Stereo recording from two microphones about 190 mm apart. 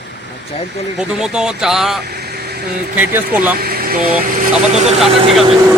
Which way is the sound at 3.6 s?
55° right (ahead or behind).